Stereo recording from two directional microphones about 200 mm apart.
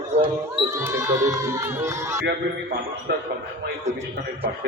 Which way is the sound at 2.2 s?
60° right (ahead or behind).